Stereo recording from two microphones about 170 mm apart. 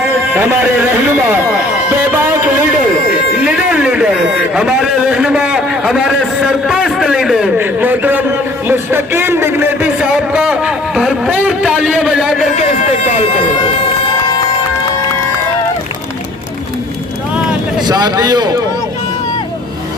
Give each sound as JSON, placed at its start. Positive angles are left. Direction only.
{"t": 0.3, "sound": "speech", "side_deg": -10}
{"t": 1.9, "sound": "music", "side_deg": -10}
{"t": 3.4, "sound": "a sound", "side_deg": -5}
{"t": 17.8, "sound": "a man's voice", "side_deg": -25}